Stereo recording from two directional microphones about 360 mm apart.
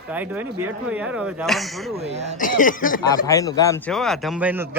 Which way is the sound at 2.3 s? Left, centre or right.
Left.